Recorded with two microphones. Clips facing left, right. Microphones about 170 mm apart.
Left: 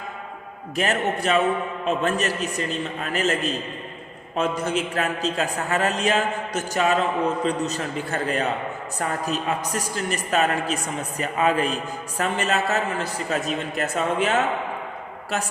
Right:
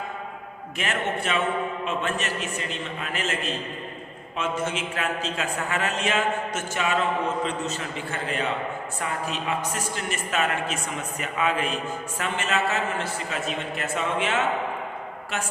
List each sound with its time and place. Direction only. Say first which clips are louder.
0.8 s a man's voice: left 5 dB; 40° left (ahead or behind)